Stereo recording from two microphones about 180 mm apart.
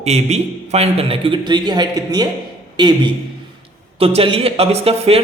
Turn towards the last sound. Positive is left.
turn(degrees=-35)  # may be behind; listen again after turning